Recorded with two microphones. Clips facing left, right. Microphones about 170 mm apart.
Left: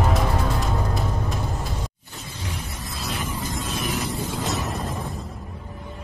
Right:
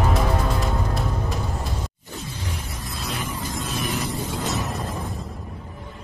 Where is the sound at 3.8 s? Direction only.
Centre (ahead or behind).